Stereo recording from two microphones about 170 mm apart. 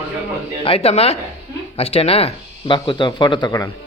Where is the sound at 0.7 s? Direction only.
35° left (ahead or behind).